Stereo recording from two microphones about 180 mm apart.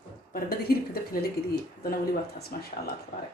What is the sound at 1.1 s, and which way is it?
Speech, 55° left (ahead or behind).